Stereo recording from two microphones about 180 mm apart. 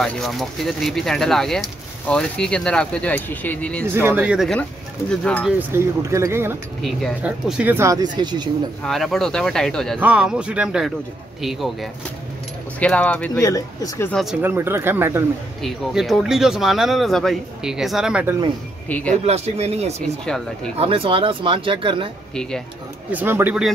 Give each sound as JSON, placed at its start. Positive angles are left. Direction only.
{"t": 0.0, "sound": "speech", "side_deg": 0}
{"t": 3.8, "sound": "speech", "side_deg": -10}
{"t": 5.6, "sound": "speech", "side_deg": -15}
{"t": 6.8, "sound": "speech", "side_deg": 0}
{"t": 8.8, "sound": "speech", "side_deg": 0}
{"t": 13.3, "sound": "speech", "side_deg": 20}
{"t": 14.1, "sound": "speech", "side_deg": -5}
{"t": 15.6, "sound": "speech", "side_deg": 0}
{"t": 18.9, "sound": "speech", "side_deg": 10}
{"t": 19.2, "sound": "speech", "side_deg": -35}
{"t": 20.2, "sound": "speech", "side_deg": 5}
{"t": 20.7, "sound": "speech", "side_deg": -30}
{"t": 22.3, "sound": "speech", "side_deg": 5}
{"t": 23.1, "sound": "speech", "side_deg": -10}